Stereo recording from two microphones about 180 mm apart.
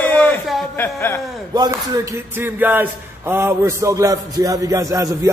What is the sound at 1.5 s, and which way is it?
A man's voice, 20° right (ahead or behind).